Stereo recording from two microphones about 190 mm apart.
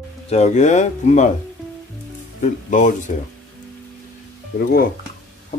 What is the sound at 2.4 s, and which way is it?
Speech, 40° left (ahead or behind).